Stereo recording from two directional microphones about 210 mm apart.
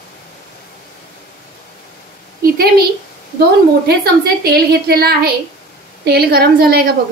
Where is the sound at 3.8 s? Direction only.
50° right (ahead or behind).